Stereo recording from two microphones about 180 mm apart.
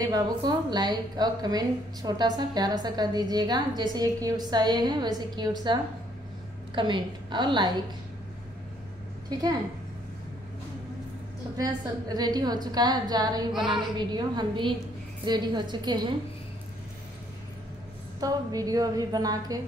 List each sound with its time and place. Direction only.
0.0 s a woman's voice: 20° right (ahead or behind)
11.5 s a woman's voice: 20° right (ahead or behind)
18.2 s a woman's voice: 20° right (ahead or behind)